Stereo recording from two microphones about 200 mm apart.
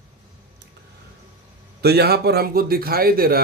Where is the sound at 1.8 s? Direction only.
55° right (ahead or behind).